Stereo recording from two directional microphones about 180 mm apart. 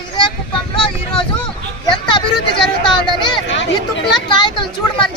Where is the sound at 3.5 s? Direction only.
85° left.